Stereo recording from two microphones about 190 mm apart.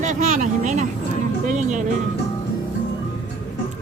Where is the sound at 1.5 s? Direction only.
40° right (ahead or behind).